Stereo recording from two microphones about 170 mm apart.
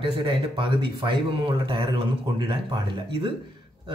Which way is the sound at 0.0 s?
30° right (ahead or behind).